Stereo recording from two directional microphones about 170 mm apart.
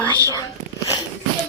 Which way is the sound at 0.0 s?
20° left (ahead or behind).